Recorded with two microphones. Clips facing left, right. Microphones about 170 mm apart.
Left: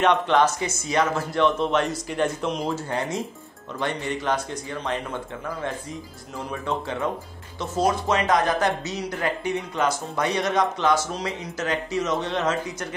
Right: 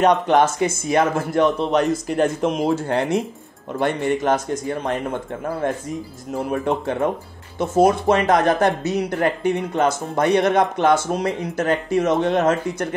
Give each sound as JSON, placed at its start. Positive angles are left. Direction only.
{"t": 0.0, "sound": "speech", "side_deg": -40}
{"t": 3.8, "sound": "speech", "side_deg": -50}